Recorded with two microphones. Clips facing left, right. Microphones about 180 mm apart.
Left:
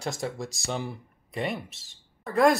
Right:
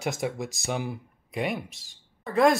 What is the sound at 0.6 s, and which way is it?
Speech, 5° right (ahead or behind).